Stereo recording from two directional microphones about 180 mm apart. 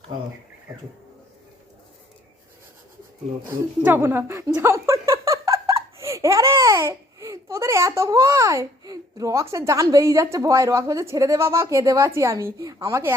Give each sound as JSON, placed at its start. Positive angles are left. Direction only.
{"t": 3.4, "sound": "a woman's voice", "side_deg": -10}